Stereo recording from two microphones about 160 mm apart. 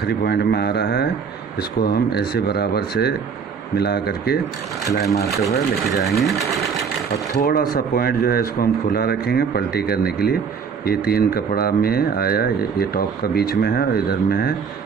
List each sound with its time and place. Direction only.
0.0 s speech: 80° left
1.6 s speech: 80° left
5.2 s speech: centre (ahead or behind)
7.3 s speech: 65° left (ahead or behind)